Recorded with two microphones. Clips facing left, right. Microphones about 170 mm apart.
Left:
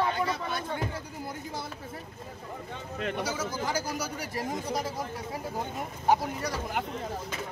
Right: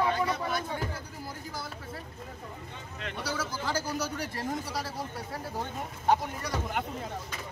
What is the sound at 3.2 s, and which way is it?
Speech, 20° left (ahead or behind).